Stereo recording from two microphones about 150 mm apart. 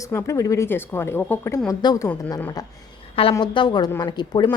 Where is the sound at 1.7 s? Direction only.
25° left (ahead or behind).